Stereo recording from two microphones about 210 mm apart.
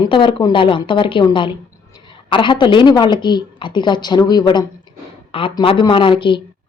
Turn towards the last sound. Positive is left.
turn(degrees=25)  # may be behind; listen again after turning